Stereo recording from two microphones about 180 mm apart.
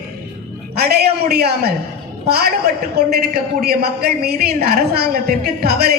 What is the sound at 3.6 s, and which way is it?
A woman's voice, 60° right (ahead or behind).